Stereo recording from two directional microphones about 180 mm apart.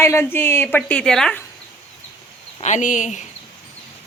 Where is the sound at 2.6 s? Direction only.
45° left (ahead or behind).